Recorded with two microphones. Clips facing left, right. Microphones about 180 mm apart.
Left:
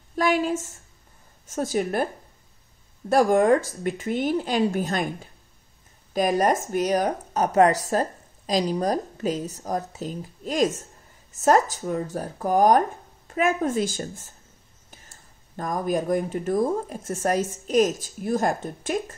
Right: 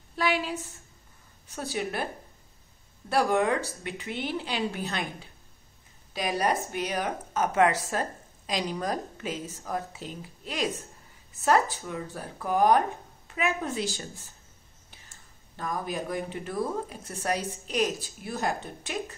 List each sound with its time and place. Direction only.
0.1 s speech: 45° left (ahead or behind)
3.1 s speech: 45° left (ahead or behind)